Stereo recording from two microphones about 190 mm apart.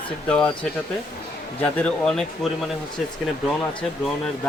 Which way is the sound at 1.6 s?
5° left (ahead or behind).